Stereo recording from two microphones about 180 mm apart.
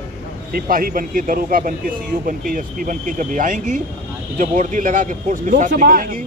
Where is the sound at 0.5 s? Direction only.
55° right (ahead or behind).